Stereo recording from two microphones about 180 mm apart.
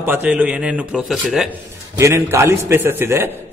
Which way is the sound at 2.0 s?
15° right (ahead or behind).